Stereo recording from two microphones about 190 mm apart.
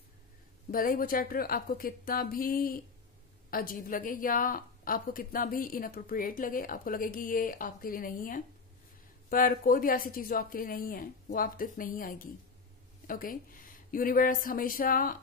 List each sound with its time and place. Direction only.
0.7 s a woman's voice: 50° left (ahead or behind)